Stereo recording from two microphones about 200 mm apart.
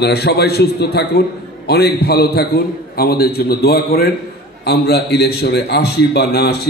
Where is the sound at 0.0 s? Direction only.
55° left (ahead or behind).